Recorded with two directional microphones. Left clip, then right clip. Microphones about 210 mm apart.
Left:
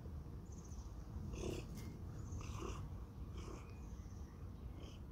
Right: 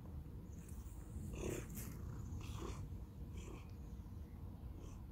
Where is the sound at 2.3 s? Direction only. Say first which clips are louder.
Left 2 dB; centre (ahead or behind).